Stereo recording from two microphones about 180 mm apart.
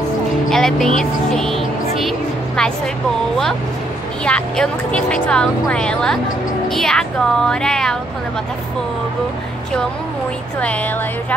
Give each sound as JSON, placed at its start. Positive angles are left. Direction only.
{"t": 0.5, "sound": "speech", "side_deg": 0}
{"t": 4.2, "sound": "speech", "side_deg": 5}